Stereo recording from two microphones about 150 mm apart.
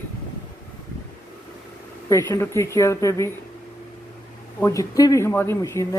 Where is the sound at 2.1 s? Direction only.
20° left (ahead or behind).